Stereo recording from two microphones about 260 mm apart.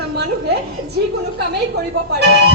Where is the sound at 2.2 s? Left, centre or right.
Right.